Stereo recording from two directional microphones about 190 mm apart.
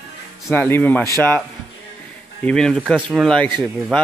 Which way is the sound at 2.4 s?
5° left (ahead or behind).